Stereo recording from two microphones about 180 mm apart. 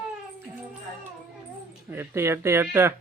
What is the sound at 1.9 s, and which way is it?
Speech, 15° right (ahead or behind).